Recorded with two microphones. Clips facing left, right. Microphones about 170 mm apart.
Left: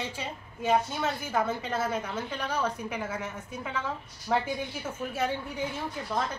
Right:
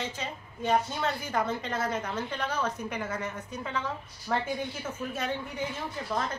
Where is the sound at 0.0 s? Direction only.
10° left (ahead or behind).